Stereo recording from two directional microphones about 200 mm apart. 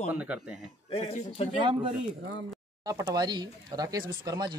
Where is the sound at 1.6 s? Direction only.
25° right (ahead or behind).